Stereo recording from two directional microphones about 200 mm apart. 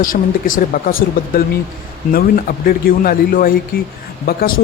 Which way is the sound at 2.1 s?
45° left (ahead or behind).